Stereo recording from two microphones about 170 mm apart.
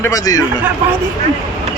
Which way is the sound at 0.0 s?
20° left (ahead or behind).